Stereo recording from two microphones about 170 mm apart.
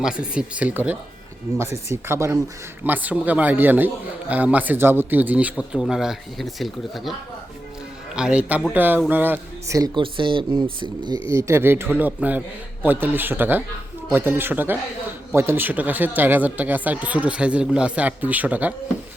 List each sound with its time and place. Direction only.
0.0 s speech: 5° right (ahead or behind)
8.1 s speech: 5° right (ahead or behind); by 11.2 s 30° right (ahead or behind)
11.3 s speech: 15° right (ahead or behind)